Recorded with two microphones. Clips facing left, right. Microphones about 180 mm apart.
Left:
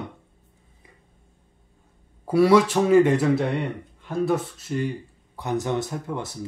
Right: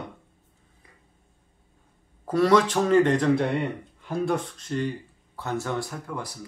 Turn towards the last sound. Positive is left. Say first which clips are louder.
# left 4 dB
turn(degrees=25)  # may be behind; listen again after turning